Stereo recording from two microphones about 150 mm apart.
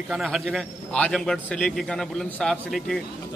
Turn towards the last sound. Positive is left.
turn(degrees=0)  # may be behind; listen again after turning